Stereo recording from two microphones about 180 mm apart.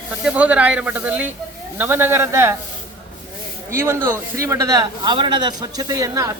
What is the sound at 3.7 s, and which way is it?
A man's voice, 15° right (ahead or behind).